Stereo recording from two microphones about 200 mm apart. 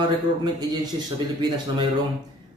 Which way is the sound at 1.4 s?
20° right (ahead or behind).